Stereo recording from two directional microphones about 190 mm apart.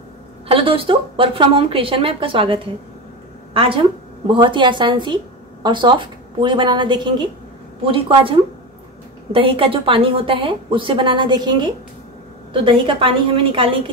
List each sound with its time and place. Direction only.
0.5 s a woman's voice: 30° right (ahead or behind)